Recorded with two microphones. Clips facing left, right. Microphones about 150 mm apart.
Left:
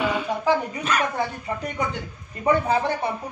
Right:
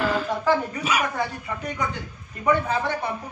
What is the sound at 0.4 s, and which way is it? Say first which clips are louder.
Speech: even; 15° left (ahead or behind).